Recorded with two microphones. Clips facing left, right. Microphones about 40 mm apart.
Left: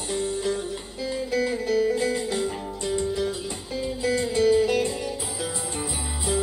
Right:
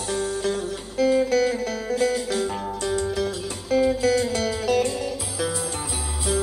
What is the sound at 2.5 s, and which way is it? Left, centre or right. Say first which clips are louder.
Music: right 3 dB; right.